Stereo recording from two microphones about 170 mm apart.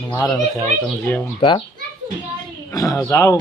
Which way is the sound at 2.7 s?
20° left (ahead or behind).